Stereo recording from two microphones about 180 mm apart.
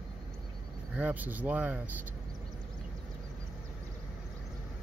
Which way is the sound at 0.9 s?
10° right (ahead or behind).